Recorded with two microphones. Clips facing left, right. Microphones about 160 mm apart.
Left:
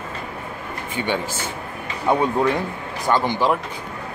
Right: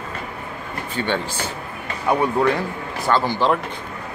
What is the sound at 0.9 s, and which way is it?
Speech, 15° left (ahead or behind).